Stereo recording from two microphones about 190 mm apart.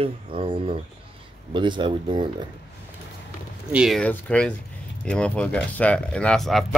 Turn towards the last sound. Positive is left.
turn(degrees=0)  # may be behind; listen again after turning